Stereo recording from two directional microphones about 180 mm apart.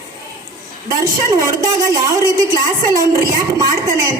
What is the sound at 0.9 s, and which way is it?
A woman's voice, 20° right (ahead or behind).